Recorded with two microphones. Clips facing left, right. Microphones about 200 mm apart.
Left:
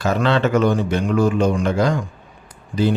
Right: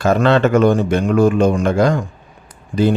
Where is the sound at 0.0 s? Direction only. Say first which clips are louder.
Right 5 dB; 50° right (ahead or behind).